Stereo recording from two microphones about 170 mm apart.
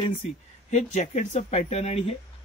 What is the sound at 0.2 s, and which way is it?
Speech, 40° left (ahead or behind).